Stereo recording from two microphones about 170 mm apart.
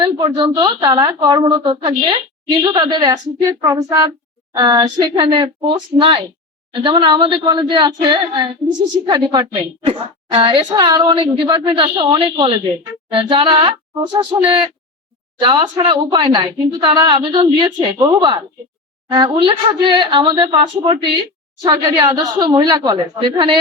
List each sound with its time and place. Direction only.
0.0 s speech: 30° right (ahead or behind)